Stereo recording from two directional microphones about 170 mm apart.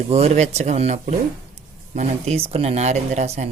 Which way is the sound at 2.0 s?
40° right (ahead or behind).